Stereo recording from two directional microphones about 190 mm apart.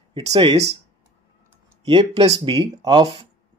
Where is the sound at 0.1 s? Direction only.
25° right (ahead or behind).